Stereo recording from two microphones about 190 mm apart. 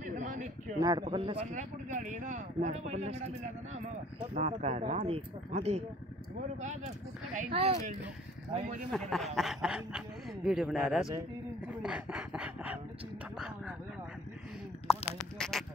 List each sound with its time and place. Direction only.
0.0 s a sound: 40° right (ahead or behind)
0.7 s speech: 20° right (ahead or behind)
4.4 s speech: 35° right (ahead or behind)
8.9 s speech: centre (ahead or behind)
14.9 s speech: centre (ahead or behind)